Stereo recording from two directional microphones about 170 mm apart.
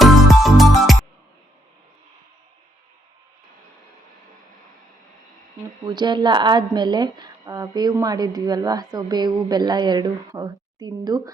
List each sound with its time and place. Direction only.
0.0 s music: centre (ahead or behind)
5.8 s speech: 25° right (ahead or behind)